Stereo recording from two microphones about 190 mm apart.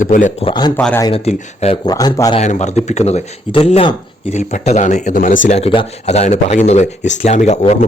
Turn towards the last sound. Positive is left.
turn(degrees=35)  # may be behind; listen again after turning